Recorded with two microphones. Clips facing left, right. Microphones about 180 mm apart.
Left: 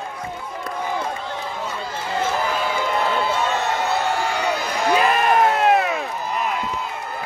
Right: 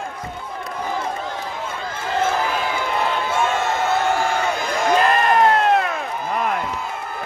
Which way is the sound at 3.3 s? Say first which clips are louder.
Right 1 dB; 50° right (ahead or behind).